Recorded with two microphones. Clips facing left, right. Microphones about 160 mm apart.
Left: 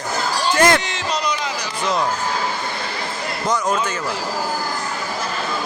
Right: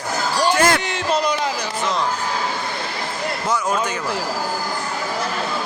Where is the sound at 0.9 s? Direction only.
55° right (ahead or behind).